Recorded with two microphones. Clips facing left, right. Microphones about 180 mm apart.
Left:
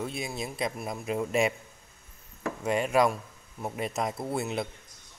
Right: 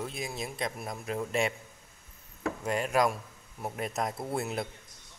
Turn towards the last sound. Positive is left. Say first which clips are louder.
# left 2 dB
turn(degrees=0)  # may be behind; listen again after turning